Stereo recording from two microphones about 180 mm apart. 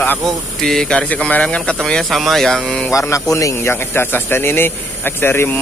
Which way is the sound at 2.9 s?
15° left (ahead or behind).